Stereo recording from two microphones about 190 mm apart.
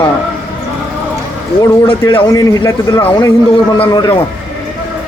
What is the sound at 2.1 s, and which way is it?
A man's voice, 25° left (ahead or behind).